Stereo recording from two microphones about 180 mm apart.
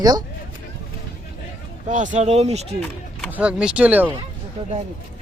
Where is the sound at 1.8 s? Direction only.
45° right (ahead or behind).